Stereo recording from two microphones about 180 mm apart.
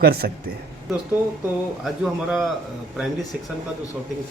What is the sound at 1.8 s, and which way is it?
Speech, centre (ahead or behind).